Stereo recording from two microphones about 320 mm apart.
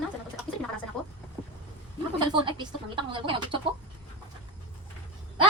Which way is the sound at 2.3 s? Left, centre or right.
Centre.